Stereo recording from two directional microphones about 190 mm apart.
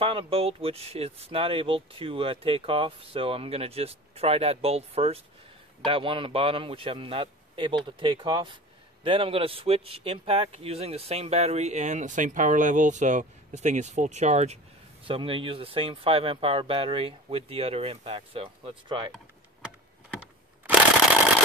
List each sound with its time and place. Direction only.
0.0 s a man's voice: 30° right (ahead or behind)